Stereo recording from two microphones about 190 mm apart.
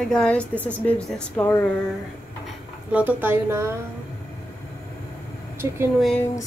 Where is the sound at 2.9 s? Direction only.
10° right (ahead or behind).